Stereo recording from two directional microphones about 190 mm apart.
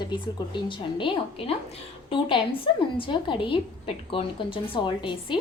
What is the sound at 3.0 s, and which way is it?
Speech, 25° left (ahead or behind).